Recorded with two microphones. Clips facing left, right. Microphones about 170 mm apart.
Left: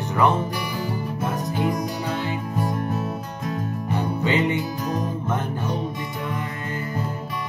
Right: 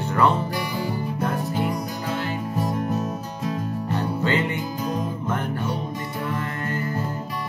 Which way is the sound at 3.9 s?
15° left (ahead or behind).